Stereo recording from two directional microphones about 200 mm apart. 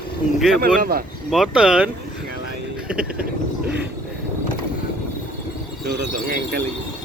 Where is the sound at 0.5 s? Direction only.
50° right (ahead or behind).